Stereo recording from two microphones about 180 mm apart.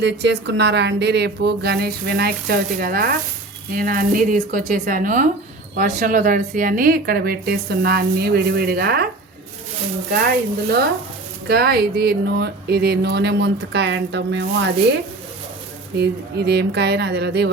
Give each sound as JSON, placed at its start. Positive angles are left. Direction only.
{"t": 0.0, "sound": "a woman's voice", "side_deg": -70}
{"t": 11.4, "sound": "speech", "side_deg": -60}
{"t": 16.0, "sound": "speech", "side_deg": -65}